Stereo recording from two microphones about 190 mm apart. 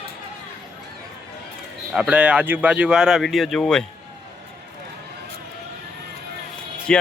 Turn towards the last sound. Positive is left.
turn(degrees=5)  # may be behind; listen again after turning